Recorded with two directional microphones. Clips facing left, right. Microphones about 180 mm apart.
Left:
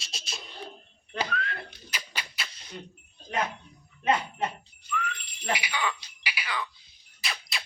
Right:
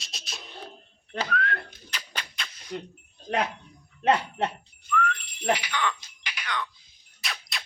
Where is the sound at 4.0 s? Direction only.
70° right (ahead or behind).